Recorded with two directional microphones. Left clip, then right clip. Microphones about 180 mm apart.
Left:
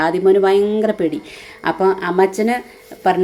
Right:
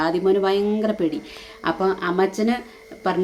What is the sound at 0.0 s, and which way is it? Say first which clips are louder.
A woman's voice: left 6 dB; 20° left (ahead or behind).